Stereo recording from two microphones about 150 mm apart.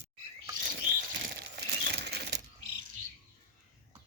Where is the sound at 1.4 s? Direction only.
90° right.